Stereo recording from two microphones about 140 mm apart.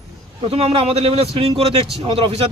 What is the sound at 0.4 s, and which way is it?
Speech, 45° right (ahead or behind).